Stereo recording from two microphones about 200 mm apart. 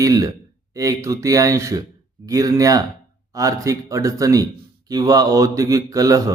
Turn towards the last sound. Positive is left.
turn(degrees=-15)  # may be behind; listen again after turning